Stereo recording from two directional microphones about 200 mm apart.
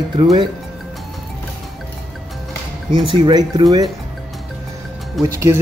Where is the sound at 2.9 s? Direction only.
25° right (ahead or behind).